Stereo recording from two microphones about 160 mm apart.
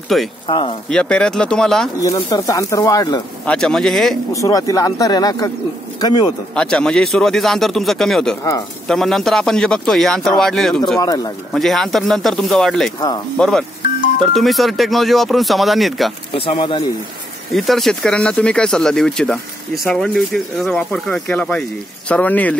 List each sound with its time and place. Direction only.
0.1 s speech: centre (ahead or behind)
0.5 s speech: 35° left (ahead or behind)
0.8 s speech: 5° left (ahead or behind)
2.0 s speech: 20° left (ahead or behind)
3.4 s speech: 5° left (ahead or behind)
4.3 s a man's voice: 20° left (ahead or behind)
6.5 s speech: 5° left (ahead or behind)
11.0 s speech: 25° left (ahead or behind)
11.5 s speech: centre (ahead or behind)
16.3 s speech: 35° left (ahead or behind)
17.5 s speech: centre (ahead or behind)